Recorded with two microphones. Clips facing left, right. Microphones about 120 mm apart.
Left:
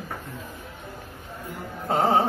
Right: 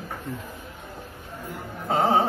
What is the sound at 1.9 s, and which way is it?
Music, 15° right (ahead or behind).